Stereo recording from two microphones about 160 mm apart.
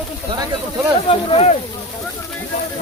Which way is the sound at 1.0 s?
40° left (ahead or behind).